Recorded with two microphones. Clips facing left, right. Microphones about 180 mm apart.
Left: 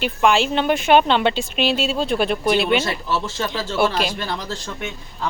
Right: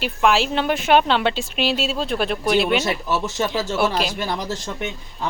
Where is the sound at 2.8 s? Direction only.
15° right (ahead or behind).